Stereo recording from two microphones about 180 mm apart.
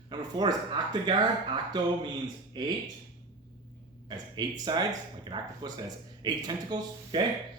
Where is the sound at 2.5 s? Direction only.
25° right (ahead or behind).